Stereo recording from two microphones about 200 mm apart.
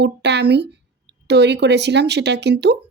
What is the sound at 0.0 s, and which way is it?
A woman's voice, 60° right (ahead or behind).